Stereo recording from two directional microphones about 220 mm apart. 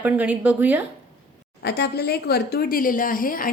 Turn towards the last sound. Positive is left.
turn(degrees=40)  # may be behind; listen again after turning